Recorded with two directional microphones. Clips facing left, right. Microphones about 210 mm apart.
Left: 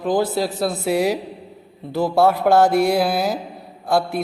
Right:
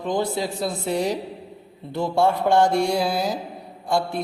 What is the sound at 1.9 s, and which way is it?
Speech, 5° left (ahead or behind).